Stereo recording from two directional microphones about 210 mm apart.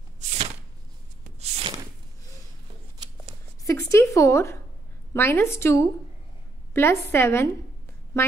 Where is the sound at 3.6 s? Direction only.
15° left (ahead or behind).